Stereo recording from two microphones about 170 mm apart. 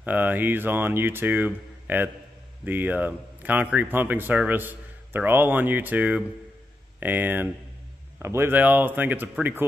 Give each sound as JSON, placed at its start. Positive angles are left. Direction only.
{"t": 0.0, "sound": "speech", "side_deg": -10}